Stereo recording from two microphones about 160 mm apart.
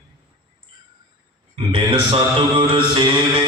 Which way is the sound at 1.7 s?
35° right (ahead or behind).